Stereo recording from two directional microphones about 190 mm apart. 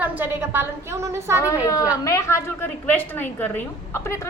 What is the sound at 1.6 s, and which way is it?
A woman's voice, 15° left (ahead or behind).